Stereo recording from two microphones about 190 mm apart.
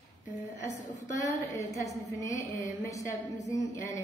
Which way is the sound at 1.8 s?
15° left (ahead or behind).